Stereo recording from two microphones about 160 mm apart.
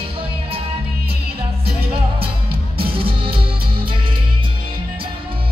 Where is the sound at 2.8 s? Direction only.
35° right (ahead or behind).